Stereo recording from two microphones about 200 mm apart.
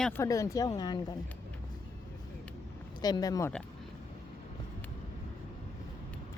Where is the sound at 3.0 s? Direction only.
20° left (ahead or behind).